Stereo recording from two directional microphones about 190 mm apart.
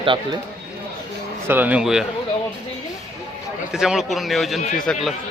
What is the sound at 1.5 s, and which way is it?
Speech, 10° right (ahead or behind).